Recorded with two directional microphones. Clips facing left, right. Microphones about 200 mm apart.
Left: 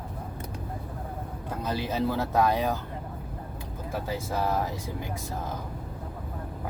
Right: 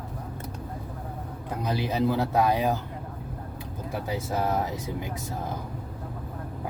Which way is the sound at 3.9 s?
15° right (ahead or behind).